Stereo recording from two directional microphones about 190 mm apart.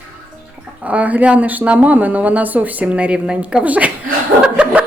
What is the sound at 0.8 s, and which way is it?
A woman's voice, 10° right (ahead or behind).